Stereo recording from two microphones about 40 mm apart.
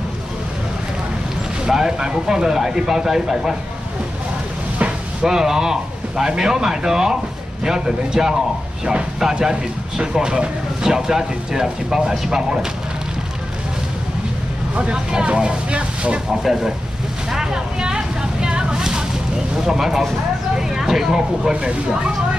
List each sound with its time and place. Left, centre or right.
1.7 s speech: centre
5.2 s speech: centre
14.8 s speech: right
16.4 s speech: centre
17.3 s a sound: centre
18.8 s vehicle: centre
19.6 s speech: centre
21.5 s speech: right